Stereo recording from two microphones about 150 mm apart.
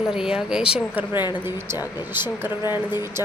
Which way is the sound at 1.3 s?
15° right (ahead or behind).